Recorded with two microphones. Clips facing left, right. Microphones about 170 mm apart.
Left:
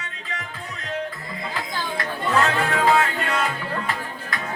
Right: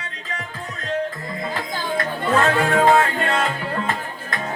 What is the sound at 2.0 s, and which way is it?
Music, 50° right (ahead or behind).